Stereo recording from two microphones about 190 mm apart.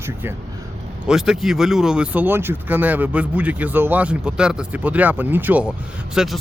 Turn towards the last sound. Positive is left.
turn(degrees=-5)  # may be behind; listen again after turning